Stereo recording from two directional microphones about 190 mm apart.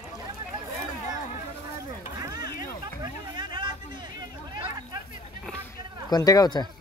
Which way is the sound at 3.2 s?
25° right (ahead or behind).